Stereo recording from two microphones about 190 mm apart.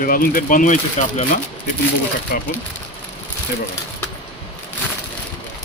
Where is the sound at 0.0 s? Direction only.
50° left (ahead or behind).